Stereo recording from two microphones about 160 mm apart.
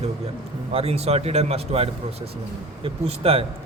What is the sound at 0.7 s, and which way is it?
A man's voice, 40° right (ahead or behind).